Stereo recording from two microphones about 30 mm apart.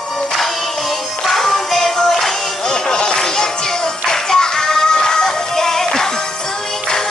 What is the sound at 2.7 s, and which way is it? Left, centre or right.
Music, left.